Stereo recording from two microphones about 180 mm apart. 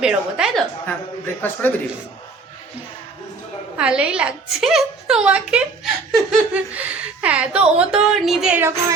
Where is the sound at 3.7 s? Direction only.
5° right (ahead or behind).